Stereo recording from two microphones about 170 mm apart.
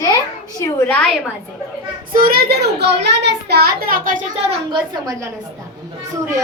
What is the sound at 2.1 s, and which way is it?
A child's voice, 60° right (ahead or behind).